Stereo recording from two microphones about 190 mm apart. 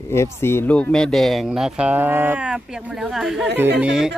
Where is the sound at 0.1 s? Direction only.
15° left (ahead or behind).